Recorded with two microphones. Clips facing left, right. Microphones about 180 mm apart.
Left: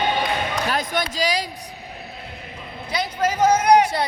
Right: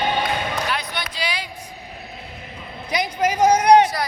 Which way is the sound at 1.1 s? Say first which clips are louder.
Left 4 dB; 40° left (ahead or behind).